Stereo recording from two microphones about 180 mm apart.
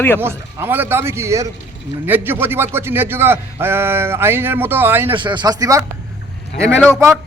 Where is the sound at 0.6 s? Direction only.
10° right (ahead or behind).